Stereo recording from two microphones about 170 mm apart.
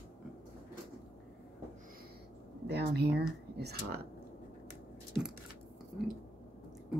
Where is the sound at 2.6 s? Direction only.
75° right (ahead or behind).